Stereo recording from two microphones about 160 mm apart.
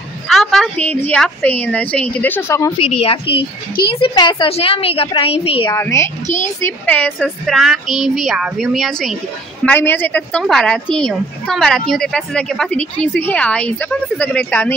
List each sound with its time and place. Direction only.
0.3 s a woman's voice: centre (ahead or behind); by 2.7 s 15° left (ahead or behind)
2.8 s a woman's voice: 35° left (ahead or behind)
5.7 s a woman's voice: 20° left (ahead or behind)
6.2 s a woman's voice: 50° left (ahead or behind)
6.6 s a woman's voice: 10° left (ahead or behind)
9.7 s a woman's voice: 10° left (ahead or behind)